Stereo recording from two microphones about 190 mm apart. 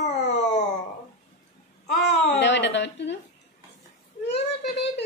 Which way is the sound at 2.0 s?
65° left (ahead or behind).